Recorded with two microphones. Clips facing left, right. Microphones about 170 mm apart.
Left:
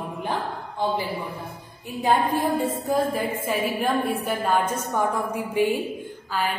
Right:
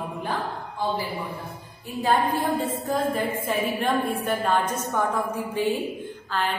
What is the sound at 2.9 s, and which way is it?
A woman's voice, 10° left (ahead or behind).